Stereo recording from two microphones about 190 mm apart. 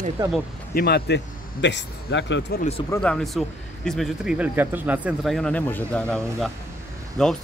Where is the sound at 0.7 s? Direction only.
55° left (ahead or behind).